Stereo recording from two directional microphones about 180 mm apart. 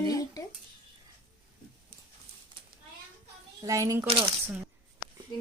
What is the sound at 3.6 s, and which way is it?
Speech, 15° right (ahead or behind).